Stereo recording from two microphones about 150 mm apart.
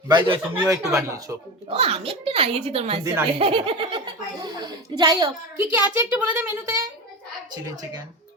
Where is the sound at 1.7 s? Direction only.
40° right (ahead or behind); by 5.6 s 25° right (ahead or behind).